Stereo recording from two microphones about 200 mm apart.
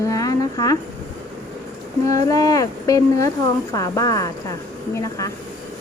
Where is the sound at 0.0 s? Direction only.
15° left (ahead or behind).